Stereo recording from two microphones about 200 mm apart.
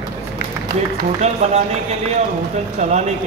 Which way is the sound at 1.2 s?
35° right (ahead or behind).